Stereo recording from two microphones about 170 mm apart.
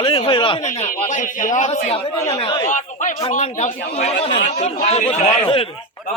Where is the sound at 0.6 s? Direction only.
45° left (ahead or behind).